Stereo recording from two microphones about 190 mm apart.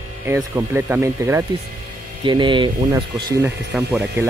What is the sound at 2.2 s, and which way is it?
Speech, 25° right (ahead or behind).